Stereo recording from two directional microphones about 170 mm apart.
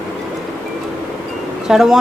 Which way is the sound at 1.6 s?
Centre (ahead or behind).